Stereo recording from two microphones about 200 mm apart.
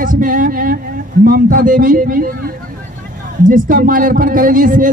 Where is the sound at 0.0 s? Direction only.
40° right (ahead or behind).